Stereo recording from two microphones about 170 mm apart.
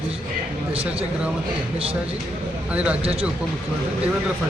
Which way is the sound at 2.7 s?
5° right (ahead or behind).